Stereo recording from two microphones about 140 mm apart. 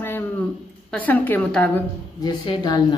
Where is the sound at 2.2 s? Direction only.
30° left (ahead or behind).